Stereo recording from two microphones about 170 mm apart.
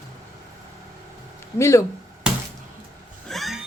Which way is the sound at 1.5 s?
15° left (ahead or behind).